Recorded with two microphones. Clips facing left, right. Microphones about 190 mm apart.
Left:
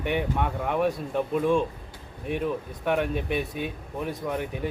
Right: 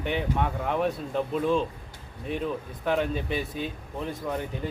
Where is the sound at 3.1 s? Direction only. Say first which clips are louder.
Left 2 dB; 65° left (ahead or behind).